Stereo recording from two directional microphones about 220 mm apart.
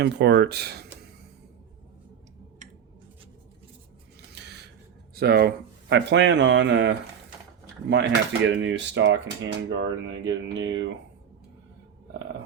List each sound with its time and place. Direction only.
0.0 s speech: 50° right (ahead or behind)
4.3 s a sound: 50° right (ahead or behind)
5.1 s speech: 45° right (ahead or behind)